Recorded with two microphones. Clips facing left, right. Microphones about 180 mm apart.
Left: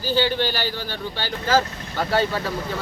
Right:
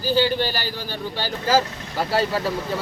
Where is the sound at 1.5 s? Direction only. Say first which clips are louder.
Even; 5° right (ahead or behind).